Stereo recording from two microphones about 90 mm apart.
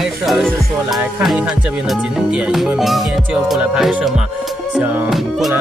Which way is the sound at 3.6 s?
10° right (ahead or behind).